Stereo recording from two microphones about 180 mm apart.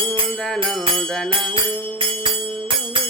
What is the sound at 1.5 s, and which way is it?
Music, 30° right (ahead or behind).